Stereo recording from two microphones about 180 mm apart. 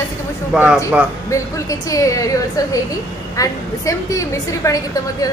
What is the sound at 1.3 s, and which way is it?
A woman's voice, 20° left (ahead or behind).